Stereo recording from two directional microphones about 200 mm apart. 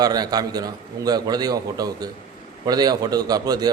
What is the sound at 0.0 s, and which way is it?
A man's voice, 20° right (ahead or behind).